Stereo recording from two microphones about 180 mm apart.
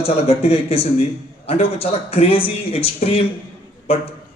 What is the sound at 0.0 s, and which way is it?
A man's voice, 30° left (ahead or behind).